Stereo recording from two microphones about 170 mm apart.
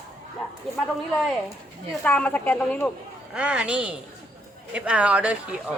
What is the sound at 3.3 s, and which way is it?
Speech, 5° right (ahead or behind).